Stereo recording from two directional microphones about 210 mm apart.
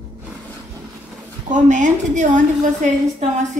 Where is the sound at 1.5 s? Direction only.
35° right (ahead or behind).